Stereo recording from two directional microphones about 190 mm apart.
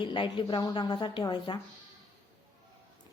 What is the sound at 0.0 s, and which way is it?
Speech, 25° left (ahead or behind).